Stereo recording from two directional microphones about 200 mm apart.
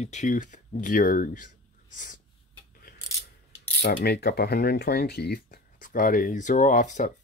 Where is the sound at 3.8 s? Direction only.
55° left (ahead or behind).